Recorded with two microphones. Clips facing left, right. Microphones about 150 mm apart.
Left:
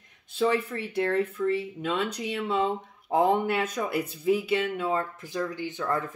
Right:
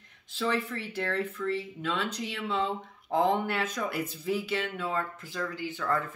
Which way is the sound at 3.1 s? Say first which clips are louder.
Left 3 dB; 10° left (ahead or behind).